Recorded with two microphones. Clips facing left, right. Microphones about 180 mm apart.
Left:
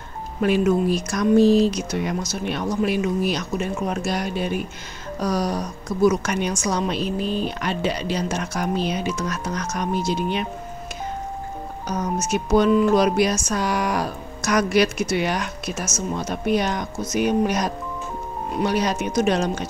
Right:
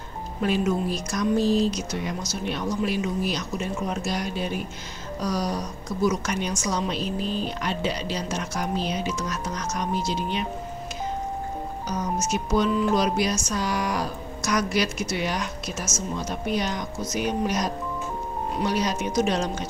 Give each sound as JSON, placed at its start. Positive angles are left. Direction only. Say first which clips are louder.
{"t": 0.4, "sound": "speech", "louder": "left 5 dB", "side_deg": 60}
{"t": 12.3, "sound": "speech", "louder": "left 7 dB", "side_deg": 60}